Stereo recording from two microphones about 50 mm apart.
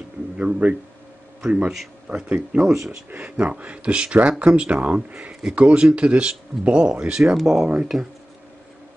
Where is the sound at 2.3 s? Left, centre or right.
Centre.